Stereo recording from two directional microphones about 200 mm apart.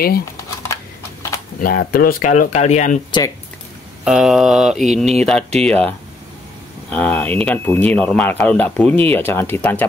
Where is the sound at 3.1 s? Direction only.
20° left (ahead or behind).